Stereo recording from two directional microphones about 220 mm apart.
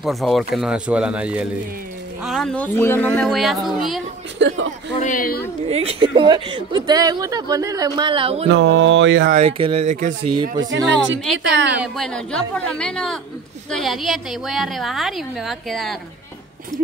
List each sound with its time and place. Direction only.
0.0 s a woman's voice: centre (ahead or behind)
4.4 s mantra: 55° right (ahead or behind)
5.0 s speech: 40° left (ahead or behind)
5.7 s speech: 25° right (ahead or behind)
8.5 s mantra: 55° right (ahead or behind)
9.3 s speech: 30° right (ahead or behind)
10.3 s speech: 20° right (ahead or behind)
11.3 s mantra: 55° right (ahead or behind)
11.8 s a woman's voice: centre (ahead or behind)